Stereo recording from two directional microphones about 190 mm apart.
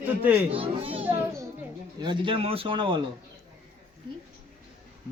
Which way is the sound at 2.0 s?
25° right (ahead or behind).